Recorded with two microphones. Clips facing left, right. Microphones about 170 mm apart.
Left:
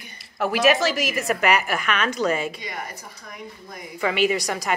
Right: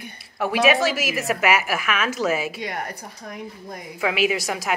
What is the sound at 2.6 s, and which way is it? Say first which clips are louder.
Speech: right 4 dB; 65° right (ahead or behind).